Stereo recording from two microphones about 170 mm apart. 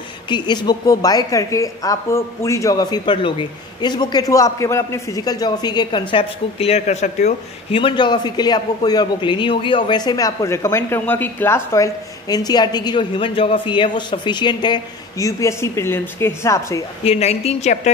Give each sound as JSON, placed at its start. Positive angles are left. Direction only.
{"t": 0.3, "sound": "a woman's voice", "side_deg": 25}
{"t": 17.0, "sound": "a woman's voice", "side_deg": 35}